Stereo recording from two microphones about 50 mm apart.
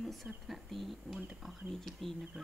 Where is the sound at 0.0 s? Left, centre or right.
Centre.